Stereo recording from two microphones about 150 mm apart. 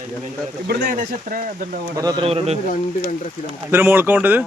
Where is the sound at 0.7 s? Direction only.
90° right.